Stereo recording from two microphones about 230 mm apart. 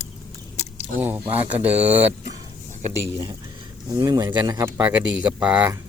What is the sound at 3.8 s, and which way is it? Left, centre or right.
Speech, centre.